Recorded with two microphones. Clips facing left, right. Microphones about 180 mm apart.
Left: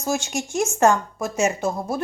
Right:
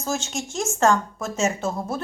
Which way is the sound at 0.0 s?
15° left (ahead or behind).